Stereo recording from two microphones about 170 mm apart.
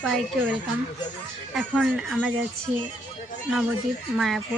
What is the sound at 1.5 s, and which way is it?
Speech, 5° right (ahead or behind).